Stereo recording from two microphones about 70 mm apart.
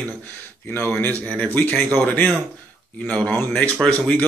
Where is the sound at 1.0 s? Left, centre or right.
Left.